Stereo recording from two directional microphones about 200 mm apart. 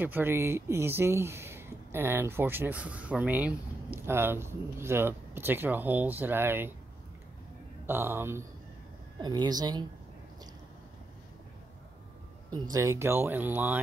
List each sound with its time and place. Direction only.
0.0 s speech: 10° right (ahead or behind)
7.8 s a woman's voice: 10° right (ahead or behind)
12.6 s speech: 15° right (ahead or behind)